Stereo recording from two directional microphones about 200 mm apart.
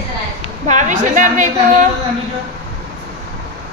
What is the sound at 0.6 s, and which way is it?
Speech, 40° right (ahead or behind).